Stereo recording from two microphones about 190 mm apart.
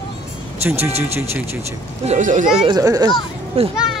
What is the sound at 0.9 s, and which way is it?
Speech, 35° right (ahead or behind).